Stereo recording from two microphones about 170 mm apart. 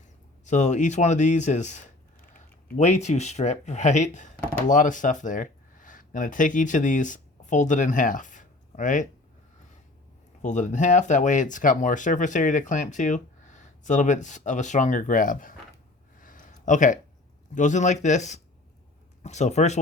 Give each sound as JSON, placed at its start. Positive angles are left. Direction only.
{"t": 0.4, "sound": "speech", "side_deg": 45}
{"t": 10.4, "sound": "speech", "side_deg": 45}
{"t": 16.2, "sound": "a sound", "side_deg": 50}
{"t": 17.5, "sound": "speech", "side_deg": 45}